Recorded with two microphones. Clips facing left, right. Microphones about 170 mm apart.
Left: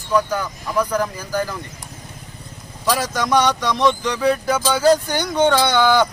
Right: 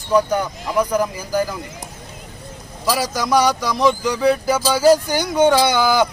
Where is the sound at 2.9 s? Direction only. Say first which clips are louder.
Even; 5° right (ahead or behind).